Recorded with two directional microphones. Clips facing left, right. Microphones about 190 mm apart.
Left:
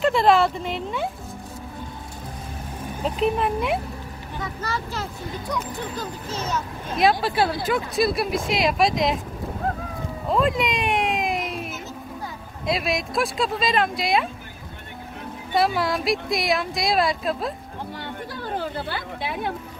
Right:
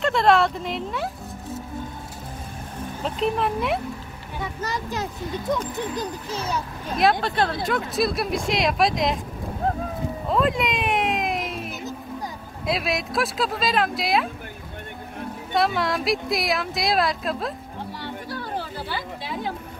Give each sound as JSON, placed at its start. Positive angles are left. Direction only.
{"t": 0.0, "sound": "speech", "side_deg": 0}
{"t": 3.0, "sound": "speech", "side_deg": 0}
{"t": 4.6, "sound": "a child's voice", "side_deg": -15}
{"t": 7.0, "sound": "speech", "side_deg": 0}
{"t": 10.2, "sound": "music", "side_deg": 0}
{"t": 12.6, "sound": "speech", "side_deg": 0}
{"t": 15.5, "sound": "speech", "side_deg": 0}
{"t": 18.6, "sound": "speech", "side_deg": 55}